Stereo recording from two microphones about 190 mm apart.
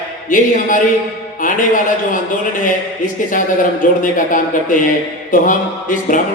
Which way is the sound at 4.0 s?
45° left (ahead or behind).